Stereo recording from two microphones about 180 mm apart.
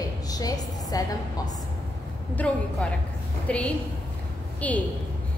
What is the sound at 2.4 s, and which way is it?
A woman's voice, 10° left (ahead or behind).